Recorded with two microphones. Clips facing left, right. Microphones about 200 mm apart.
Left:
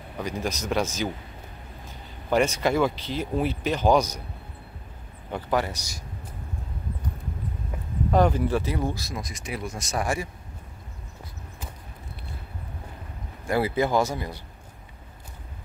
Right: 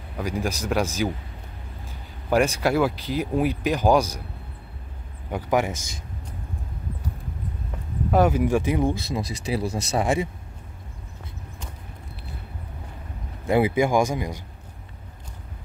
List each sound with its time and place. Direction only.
0.2 s speech: 10° right (ahead or behind)
2.2 s speech: 10° right (ahead or behind)
5.3 s speech: 15° right (ahead or behind)
8.1 s speech: 10° right (ahead or behind)
9.2 s speech: 30° right (ahead or behind)
13.5 s speech: 15° right (ahead or behind)